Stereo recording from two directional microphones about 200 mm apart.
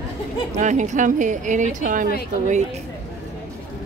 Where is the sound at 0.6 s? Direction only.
35° right (ahead or behind).